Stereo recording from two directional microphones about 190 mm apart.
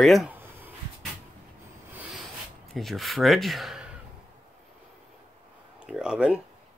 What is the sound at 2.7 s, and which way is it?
Speech, centre (ahead or behind).